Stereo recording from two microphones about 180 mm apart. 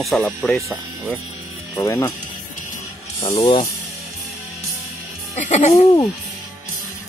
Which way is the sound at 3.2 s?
25° left (ahead or behind).